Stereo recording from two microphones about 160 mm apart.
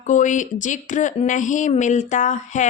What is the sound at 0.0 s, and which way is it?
A woman's voice, 50° left (ahead or behind).